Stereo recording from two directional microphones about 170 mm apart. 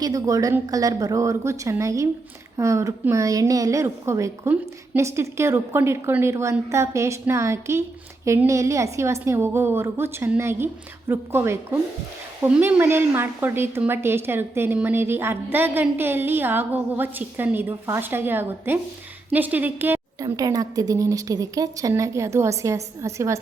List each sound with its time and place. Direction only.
0.0 s a woman's voice: 20° right (ahead or behind)